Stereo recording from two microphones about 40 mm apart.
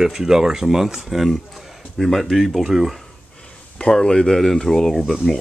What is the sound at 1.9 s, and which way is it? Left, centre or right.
Speech, centre.